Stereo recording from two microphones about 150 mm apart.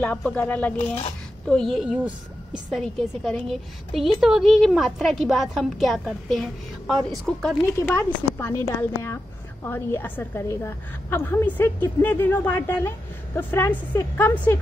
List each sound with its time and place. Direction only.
0.0 s a woman's voice: 10° left (ahead or behind)
7.6 s a woman's voice: 15° left (ahead or behind)